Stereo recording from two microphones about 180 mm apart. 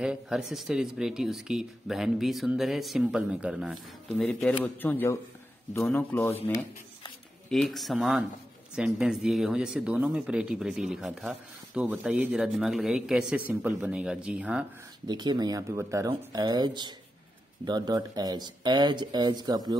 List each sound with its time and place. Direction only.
0.0 s speech: 5° right (ahead or behind); by 6.3 s 10° left (ahead or behind)
7.4 s speech: centre (ahead or behind)
15.0 s speech: 25° right (ahead or behind)